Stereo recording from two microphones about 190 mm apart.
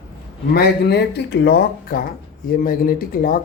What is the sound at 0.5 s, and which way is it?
Speech, 55° left (ahead or behind).